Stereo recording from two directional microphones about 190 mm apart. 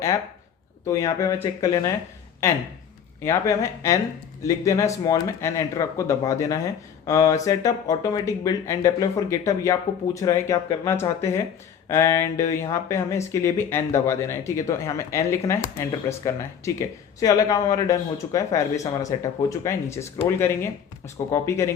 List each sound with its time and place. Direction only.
0.9 s speech: 15° left (ahead or behind)